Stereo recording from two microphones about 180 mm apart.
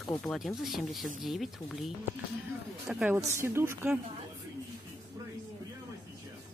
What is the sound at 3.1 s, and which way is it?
Speech, 15° right (ahead or behind).